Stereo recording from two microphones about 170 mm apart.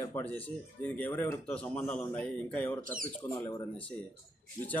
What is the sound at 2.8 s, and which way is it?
Speech, 55° right (ahead or behind).